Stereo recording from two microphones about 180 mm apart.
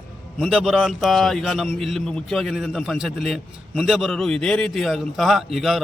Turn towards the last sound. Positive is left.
turn(degrees=0)  # may be behind; listen again after turning